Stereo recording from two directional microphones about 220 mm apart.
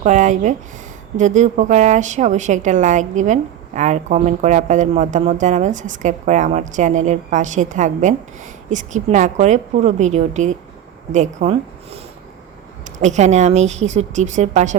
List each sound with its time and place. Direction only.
0.0 s a woman's voice: 35° right (ahead or behind)
13.0 s a woman's voice: 35° right (ahead or behind)